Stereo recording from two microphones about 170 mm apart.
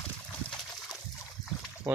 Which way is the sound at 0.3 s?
5° left (ahead or behind).